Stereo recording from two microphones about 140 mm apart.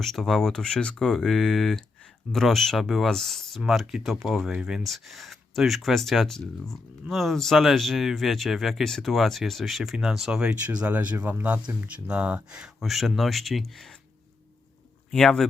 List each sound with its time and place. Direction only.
0.0 s speech: centre (ahead or behind)
15.1 s speech: centre (ahead or behind)